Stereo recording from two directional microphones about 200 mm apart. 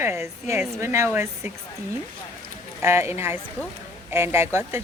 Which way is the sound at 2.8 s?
10° right (ahead or behind).